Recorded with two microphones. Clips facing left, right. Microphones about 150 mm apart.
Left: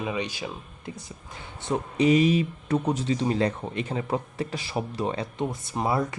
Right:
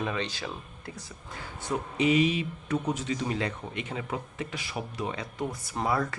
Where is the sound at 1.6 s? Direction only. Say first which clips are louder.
Left 4 dB; 35° left (ahead or behind).